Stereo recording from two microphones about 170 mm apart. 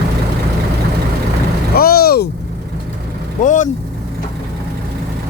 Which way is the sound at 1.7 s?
60° left (ahead or behind).